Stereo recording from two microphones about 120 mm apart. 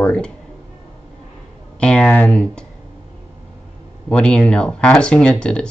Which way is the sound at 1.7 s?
10° left (ahead or behind).